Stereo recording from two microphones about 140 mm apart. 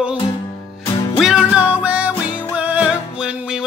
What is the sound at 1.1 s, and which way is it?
Music, centre (ahead or behind).